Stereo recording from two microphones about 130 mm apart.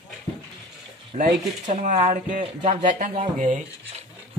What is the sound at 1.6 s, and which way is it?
Speech, 60° right (ahead or behind).